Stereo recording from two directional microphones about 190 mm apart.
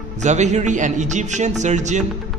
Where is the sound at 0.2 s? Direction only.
40° right (ahead or behind).